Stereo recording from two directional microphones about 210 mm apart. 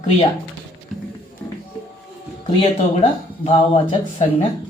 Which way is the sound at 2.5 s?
25° left (ahead or behind).